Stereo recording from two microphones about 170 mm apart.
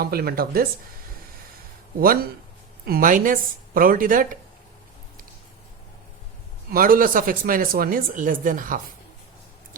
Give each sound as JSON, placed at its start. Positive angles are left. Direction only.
{"t": 0.0, "sound": "speech", "side_deg": -65}
{"t": 2.8, "sound": "speech", "side_deg": -55}
{"t": 6.7, "sound": "speech", "side_deg": -55}